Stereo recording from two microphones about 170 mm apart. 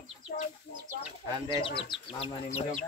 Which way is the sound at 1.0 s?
30° left (ahead or behind).